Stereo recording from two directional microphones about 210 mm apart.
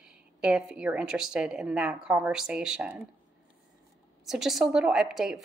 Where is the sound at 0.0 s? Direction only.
5° right (ahead or behind).